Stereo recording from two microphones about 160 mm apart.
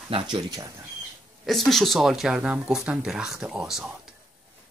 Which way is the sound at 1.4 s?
Centre (ahead or behind).